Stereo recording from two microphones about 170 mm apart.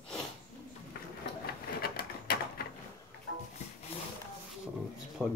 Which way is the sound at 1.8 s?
65° left (ahead or behind).